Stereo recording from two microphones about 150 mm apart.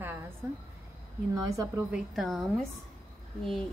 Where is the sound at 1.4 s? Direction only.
25° right (ahead or behind).